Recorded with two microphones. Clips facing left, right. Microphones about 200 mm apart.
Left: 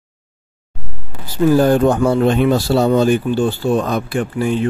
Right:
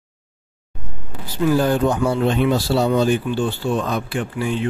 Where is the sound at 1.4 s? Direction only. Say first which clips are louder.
Left 5 dB; 45° left (ahead or behind).